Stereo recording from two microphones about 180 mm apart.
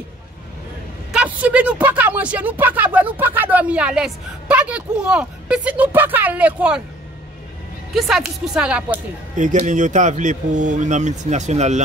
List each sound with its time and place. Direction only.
1.1 s speech: 10° right (ahead or behind)
7.9 s speech: centre (ahead or behind)
9.4 s speech: 45° right (ahead or behind)